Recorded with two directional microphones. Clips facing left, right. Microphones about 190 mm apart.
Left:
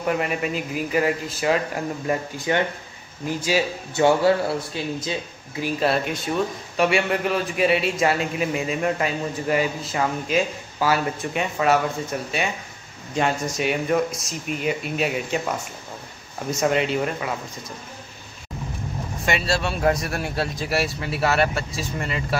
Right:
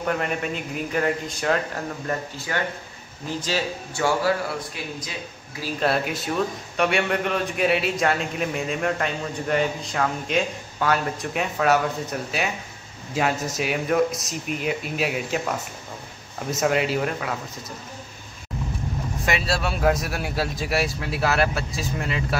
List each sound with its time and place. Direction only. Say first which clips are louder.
0.0 s a man's voice: left 2 dB; 5° left (ahead or behind)
2.0 s speech: left 8 dB; 15° left (ahead or behind)
3.9 s speech: left 5 dB; 25° left (ahead or behind)
5.8 s a man's voice: even; centre (ahead or behind)
19.2 s a man's voice: left 2 dB; centre (ahead or behind)